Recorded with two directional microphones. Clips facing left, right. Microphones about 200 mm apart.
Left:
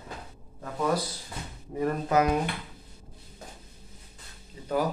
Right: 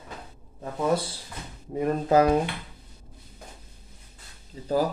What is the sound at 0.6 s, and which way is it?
Speech, 25° right (ahead or behind).